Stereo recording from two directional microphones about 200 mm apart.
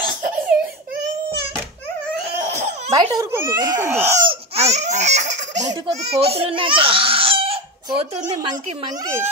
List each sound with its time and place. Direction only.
2.9 s a child's voice: 15° right (ahead or behind)
4.3 s speech: 30° right (ahead or behind)
9.0 s a child's voice: 15° right (ahead or behind)